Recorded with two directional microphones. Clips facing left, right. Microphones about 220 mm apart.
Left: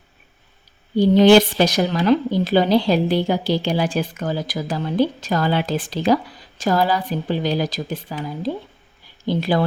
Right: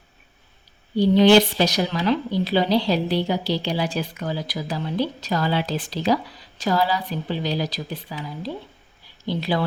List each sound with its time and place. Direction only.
0.9 s speech: 45° left (ahead or behind)